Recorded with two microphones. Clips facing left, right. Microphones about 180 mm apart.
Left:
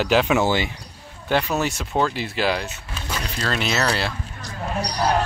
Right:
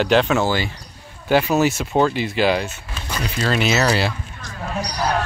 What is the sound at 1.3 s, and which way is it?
Speech, 5° right (ahead or behind).